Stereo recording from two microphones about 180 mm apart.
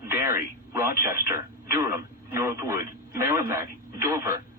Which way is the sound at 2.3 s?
15° right (ahead or behind).